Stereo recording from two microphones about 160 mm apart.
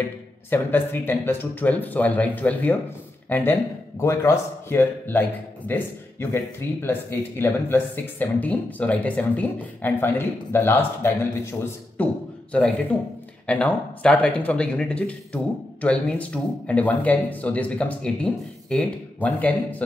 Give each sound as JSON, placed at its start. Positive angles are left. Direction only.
{"t": 0.5, "sound": "speech", "side_deg": 10}